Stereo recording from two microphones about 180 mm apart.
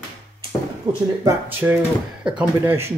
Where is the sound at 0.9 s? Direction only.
25° right (ahead or behind).